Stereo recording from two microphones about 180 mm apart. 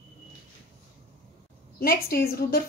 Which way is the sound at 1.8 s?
60° left (ahead or behind).